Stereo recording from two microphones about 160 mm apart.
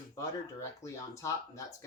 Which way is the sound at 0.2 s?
20° left (ahead or behind).